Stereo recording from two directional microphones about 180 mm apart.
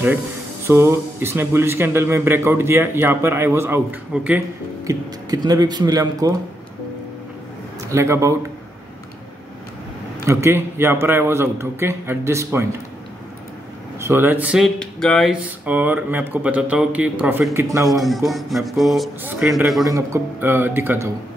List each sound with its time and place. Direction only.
0.7 s a man's voice: 15° right (ahead or behind)
4.8 s speech: 20° right (ahead or behind)
7.9 s a man's voice: 15° right (ahead or behind)
10.2 s a man's voice: 15° right (ahead or behind)
13.9 s a man's voice: 15° right (ahead or behind)
14.8 s a man's voice: 5° left (ahead or behind)
19.8 s a man's voice: 15° right (ahead or behind)